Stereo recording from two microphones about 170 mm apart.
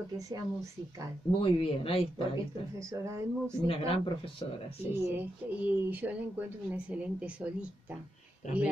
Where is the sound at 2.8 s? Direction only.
15° right (ahead or behind).